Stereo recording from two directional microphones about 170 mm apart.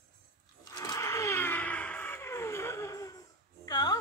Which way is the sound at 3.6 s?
20° left (ahead or behind).